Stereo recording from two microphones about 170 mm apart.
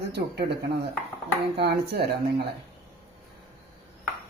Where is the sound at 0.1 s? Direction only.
75° right (ahead or behind).